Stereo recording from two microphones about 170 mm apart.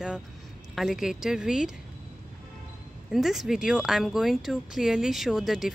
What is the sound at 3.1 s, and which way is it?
Speech, centre (ahead or behind).